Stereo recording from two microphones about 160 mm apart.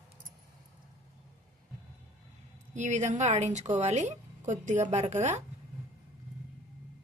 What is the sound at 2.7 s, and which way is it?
Speech, 50° right (ahead or behind).